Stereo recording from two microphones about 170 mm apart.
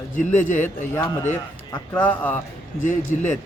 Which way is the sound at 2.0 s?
10° left (ahead or behind).